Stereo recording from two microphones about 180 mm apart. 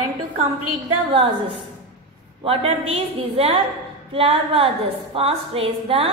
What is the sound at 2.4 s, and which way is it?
A woman's voice, 30° right (ahead or behind).